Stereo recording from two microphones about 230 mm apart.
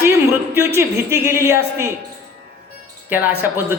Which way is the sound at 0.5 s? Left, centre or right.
Centre.